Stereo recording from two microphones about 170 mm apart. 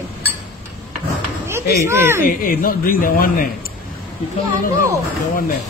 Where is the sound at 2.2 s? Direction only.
55° left (ahead or behind).